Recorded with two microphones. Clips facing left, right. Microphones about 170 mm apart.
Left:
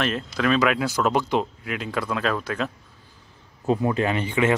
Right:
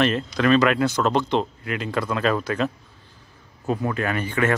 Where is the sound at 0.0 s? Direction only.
Centre (ahead or behind).